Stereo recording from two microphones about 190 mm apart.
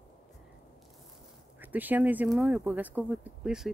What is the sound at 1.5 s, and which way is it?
Speech, 10° right (ahead or behind).